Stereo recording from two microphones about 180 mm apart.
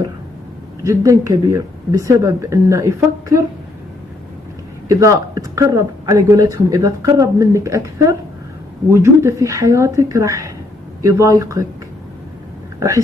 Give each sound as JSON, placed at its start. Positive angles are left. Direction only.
{"t": 0.8, "sound": "speech", "side_deg": -15}
{"t": 4.8, "sound": "speech", "side_deg": -15}